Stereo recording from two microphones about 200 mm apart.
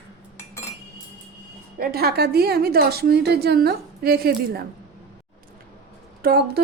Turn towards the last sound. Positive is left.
turn(degrees=-50)  # may be behind; listen again after turning